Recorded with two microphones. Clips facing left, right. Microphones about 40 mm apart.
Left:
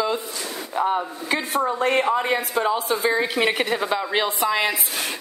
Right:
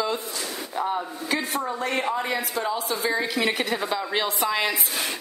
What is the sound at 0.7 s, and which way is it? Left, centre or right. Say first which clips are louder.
A woman's voice: left 5 dB; left.